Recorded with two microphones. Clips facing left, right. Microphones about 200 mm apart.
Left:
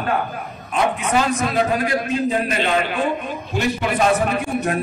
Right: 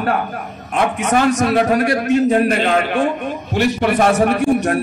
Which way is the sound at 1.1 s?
45° right (ahead or behind).